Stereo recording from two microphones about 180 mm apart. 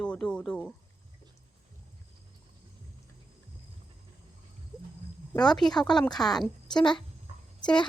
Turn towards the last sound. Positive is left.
turn(degrees=25)  # may be behind; listen again after turning